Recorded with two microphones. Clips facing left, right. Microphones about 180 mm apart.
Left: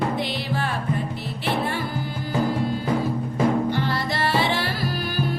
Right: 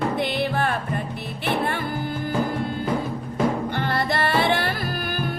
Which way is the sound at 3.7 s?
55° right (ahead or behind).